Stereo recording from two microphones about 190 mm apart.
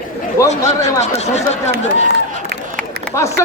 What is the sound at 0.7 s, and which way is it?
Speech, 35° left (ahead or behind).